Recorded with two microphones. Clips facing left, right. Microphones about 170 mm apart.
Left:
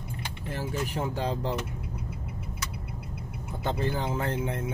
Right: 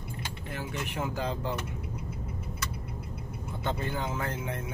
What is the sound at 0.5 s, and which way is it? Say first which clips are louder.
Speech: left 5 dB; 35° left (ahead or behind).